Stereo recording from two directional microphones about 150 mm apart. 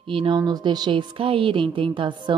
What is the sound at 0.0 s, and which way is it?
A woman's voice, 35° right (ahead or behind).